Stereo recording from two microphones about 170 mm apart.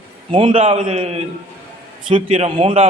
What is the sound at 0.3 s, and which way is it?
A man's voice, 30° right (ahead or behind).